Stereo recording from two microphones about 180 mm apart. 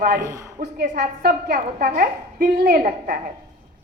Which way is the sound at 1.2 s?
55° right (ahead or behind).